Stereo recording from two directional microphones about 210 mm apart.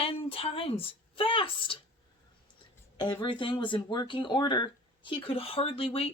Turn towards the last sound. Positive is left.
turn(degrees=25)  # may be behind; listen again after turning